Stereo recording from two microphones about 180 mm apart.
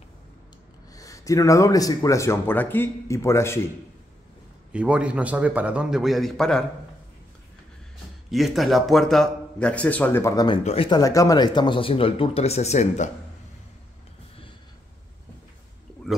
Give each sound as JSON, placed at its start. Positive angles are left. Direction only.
{"t": 0.9, "sound": "speech", "side_deg": 20}
{"t": 4.7, "sound": "a man's voice", "side_deg": -5}
{"t": 8.3, "sound": "a man's voice", "side_deg": 0}
{"t": 10.6, "sound": "speech", "side_deg": 35}
{"t": 10.9, "sound": "speech", "side_deg": 20}